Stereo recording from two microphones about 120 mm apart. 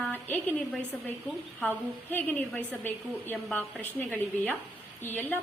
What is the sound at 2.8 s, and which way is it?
A woman's voice, 15° left (ahead or behind).